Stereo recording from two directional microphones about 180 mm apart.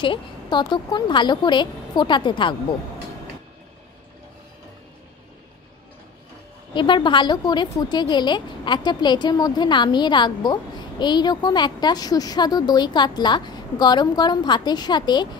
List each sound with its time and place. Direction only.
0.0 s a woman's voice: 25° left (ahead or behind)
6.7 s a woman's voice: 25° left (ahead or behind)